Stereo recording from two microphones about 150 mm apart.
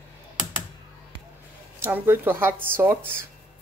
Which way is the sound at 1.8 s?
15° right (ahead or behind).